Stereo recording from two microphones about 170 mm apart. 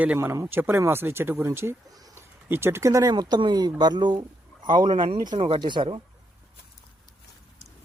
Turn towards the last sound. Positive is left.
turn(degrees=-30)  # may be behind; listen again after turning